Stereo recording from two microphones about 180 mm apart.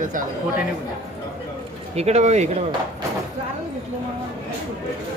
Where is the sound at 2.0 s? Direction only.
40° right (ahead or behind).